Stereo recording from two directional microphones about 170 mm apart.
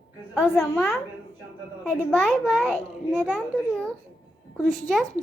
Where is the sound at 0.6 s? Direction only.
10° left (ahead or behind).